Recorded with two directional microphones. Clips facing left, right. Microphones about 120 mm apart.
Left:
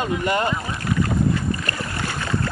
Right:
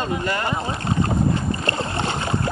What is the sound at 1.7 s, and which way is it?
Boat, 25° right (ahead or behind).